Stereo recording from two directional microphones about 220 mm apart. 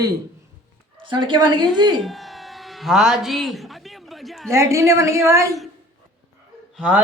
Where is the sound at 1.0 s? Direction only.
20° right (ahead or behind).